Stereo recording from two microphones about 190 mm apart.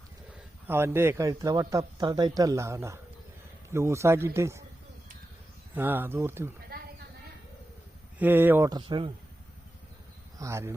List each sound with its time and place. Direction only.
0.7 s a man's voice: 15° right (ahead or behind)
5.7 s a man's voice: 10° right (ahead or behind)
6.7 s a sound: 50° right (ahead or behind)
8.2 s a man's voice: 10° right (ahead or behind)
10.3 s speech: 15° right (ahead or behind)